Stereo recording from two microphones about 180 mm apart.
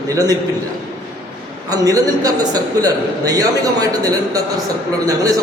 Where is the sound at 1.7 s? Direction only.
20° right (ahead or behind).